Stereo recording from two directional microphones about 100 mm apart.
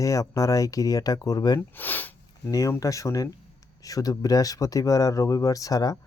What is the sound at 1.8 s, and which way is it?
Sniff, 20° left (ahead or behind).